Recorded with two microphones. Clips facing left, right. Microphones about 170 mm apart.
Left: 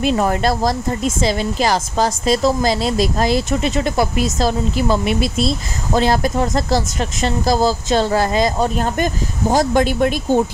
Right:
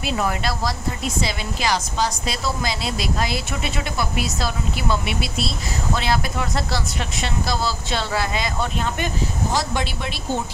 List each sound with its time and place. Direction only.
0.1 s speech: 40° left (ahead or behind)